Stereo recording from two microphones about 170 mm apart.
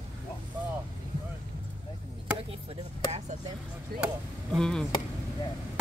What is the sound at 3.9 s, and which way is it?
Chop, 65° right (ahead or behind).